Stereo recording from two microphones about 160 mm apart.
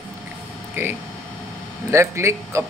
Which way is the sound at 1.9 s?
15° right (ahead or behind).